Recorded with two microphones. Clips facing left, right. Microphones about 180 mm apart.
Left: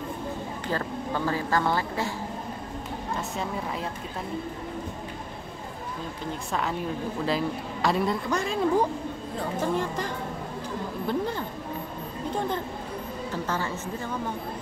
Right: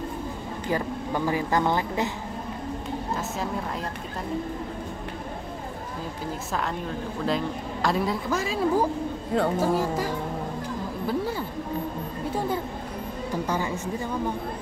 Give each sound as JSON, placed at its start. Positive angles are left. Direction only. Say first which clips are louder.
{"t": 0.7, "sound": "speech", "louder": "right 3 dB", "side_deg": -15}
{"t": 7.2, "sound": "a woman's voice", "louder": "right 2 dB", "side_deg": 0}